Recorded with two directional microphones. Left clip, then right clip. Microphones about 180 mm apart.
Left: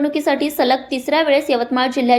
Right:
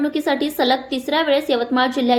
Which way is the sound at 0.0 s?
10° left (ahead or behind).